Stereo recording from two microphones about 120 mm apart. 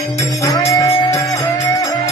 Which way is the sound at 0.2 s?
25° left (ahead or behind).